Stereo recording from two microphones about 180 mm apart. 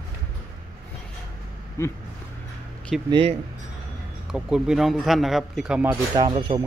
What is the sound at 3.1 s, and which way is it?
Speech, 25° right (ahead or behind).